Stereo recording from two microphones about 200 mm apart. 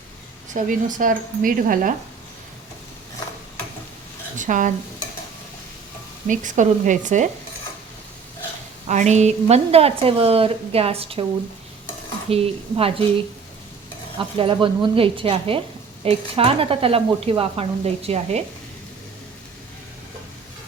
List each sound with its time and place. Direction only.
0.5 s speech: 40° right (ahead or behind)
4.4 s speech: 40° right (ahead or behind)
6.2 s speech: 40° right (ahead or behind)
8.9 s a woman's voice: 35° right (ahead or behind)
12.3 s a woman's voice: 30° right (ahead or behind)
14.2 s a woman's voice: 25° right (ahead or behind)